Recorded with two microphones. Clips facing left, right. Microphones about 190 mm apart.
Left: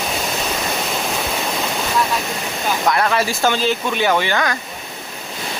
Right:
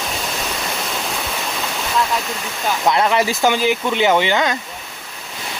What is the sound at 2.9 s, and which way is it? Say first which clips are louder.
Speech: right 2 dB; 20° right (ahead or behind).